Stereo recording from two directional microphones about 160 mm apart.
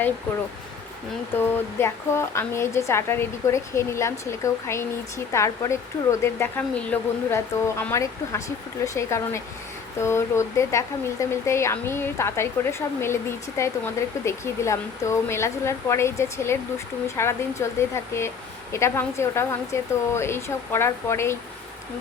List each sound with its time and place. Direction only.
1.4 s a woman's voice: 15° left (ahead or behind)
13.6 s a woman's voice: 15° left (ahead or behind)